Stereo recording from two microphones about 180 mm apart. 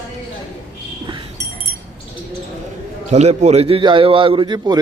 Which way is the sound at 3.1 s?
40° right (ahead or behind).